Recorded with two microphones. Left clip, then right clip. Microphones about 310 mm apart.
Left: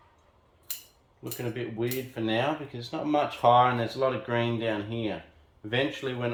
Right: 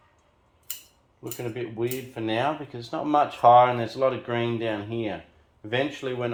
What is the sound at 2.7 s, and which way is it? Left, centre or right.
Speech, centre.